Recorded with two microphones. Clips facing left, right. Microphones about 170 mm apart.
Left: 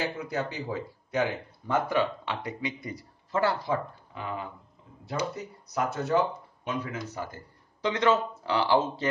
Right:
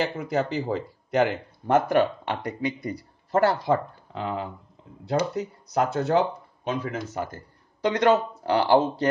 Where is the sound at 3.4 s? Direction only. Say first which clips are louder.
Right 4 dB; 75° right (ahead or behind).